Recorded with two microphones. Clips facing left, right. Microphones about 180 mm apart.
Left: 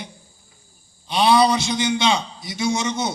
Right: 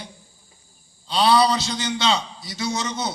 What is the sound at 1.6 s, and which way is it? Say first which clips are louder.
A man's voice: left 3 dB; 15° left (ahead or behind).